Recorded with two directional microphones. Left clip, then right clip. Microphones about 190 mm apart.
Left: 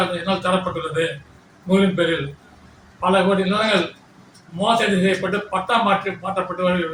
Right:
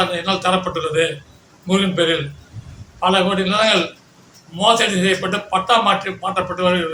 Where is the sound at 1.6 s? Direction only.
10° right (ahead or behind).